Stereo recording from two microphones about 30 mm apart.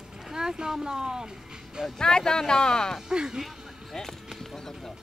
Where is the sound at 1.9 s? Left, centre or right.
Left.